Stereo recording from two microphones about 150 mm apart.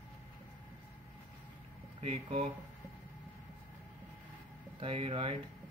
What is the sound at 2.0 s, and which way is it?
Speech, 45° right (ahead or behind).